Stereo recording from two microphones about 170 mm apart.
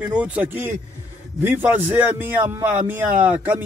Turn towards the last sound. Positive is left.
turn(degrees=-10)  # may be behind; listen again after turning